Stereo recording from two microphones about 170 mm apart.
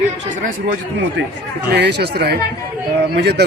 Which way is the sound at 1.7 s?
80° right.